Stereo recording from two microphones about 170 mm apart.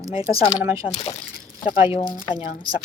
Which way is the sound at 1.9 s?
30° left (ahead or behind).